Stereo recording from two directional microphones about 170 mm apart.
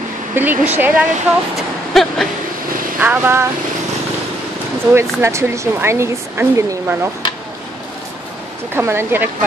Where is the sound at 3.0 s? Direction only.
10° right (ahead or behind).